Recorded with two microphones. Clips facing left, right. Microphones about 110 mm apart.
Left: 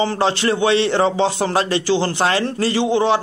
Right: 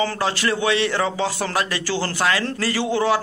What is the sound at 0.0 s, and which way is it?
Speech, 25° left (ahead or behind).